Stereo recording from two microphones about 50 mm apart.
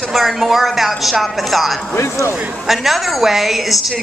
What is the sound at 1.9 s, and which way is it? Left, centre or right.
Speech, left.